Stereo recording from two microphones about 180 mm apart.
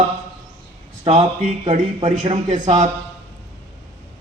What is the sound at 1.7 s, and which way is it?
A man's voice, 35° right (ahead or behind).